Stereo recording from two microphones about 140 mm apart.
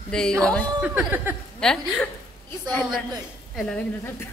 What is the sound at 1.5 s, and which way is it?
Speech, 5° left (ahead or behind).